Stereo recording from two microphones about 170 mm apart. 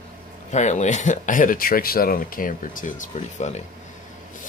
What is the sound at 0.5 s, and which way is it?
Speech, 45° left (ahead or behind).